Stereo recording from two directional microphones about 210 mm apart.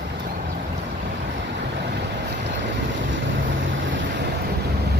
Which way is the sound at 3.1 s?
65° right (ahead or behind).